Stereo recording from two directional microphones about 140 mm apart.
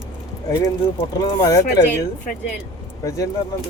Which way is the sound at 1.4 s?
25° left (ahead or behind).